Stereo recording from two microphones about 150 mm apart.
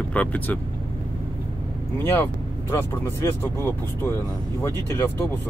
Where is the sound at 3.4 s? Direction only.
15° left (ahead or behind).